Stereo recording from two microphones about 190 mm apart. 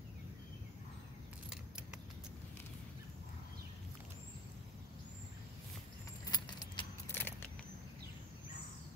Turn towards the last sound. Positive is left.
turn(degrees=10)  # may be behind; listen again after turning